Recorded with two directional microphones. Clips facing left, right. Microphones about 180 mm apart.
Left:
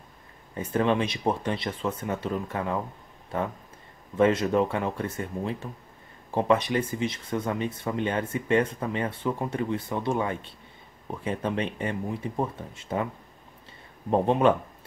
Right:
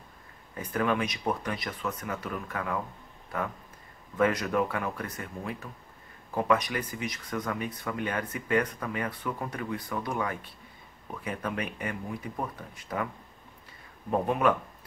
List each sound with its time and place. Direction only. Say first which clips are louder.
0.6 s speech: left 4 dB; 25° left (ahead or behind)
14.1 s speech: left 4 dB; 25° left (ahead or behind)